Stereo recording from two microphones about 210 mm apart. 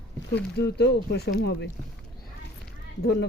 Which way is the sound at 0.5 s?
50° left (ahead or behind).